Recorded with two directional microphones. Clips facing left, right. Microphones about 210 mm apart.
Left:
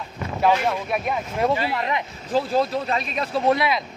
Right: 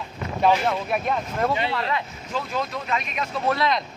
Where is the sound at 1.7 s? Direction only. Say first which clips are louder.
Left 1 dB; 20° left (ahead or behind).